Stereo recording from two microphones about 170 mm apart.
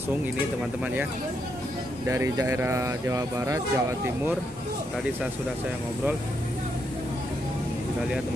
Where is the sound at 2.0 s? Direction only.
15° right (ahead or behind).